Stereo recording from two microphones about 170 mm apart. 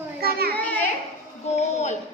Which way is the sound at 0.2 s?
65° right (ahead or behind).